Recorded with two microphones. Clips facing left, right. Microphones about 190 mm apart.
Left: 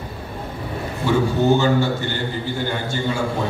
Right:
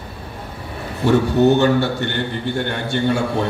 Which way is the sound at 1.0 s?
70° right (ahead or behind).